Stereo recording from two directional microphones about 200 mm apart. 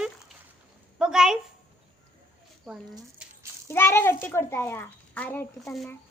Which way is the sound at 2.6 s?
5° right (ahead or behind).